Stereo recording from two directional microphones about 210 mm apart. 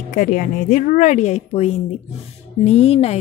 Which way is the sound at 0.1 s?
40° left (ahead or behind).